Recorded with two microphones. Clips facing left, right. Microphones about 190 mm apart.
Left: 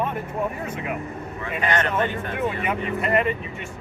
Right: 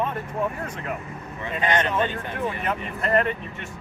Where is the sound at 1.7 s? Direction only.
20° right (ahead or behind).